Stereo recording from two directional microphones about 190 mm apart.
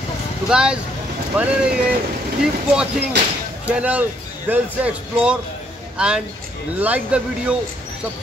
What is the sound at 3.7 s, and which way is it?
A man's voice, 5° right (ahead or behind).